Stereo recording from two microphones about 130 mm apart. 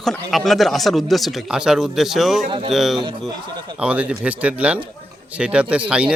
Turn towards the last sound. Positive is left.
turn(degrees=-10)  # may be behind; listen again after turning